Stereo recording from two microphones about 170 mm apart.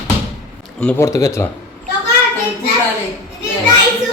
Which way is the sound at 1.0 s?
20° left (ahead or behind).